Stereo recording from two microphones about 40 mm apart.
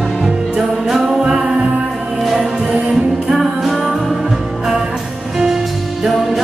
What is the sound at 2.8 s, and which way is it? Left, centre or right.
Music, centre.